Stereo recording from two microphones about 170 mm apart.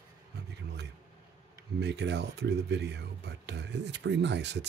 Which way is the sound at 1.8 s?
90° right.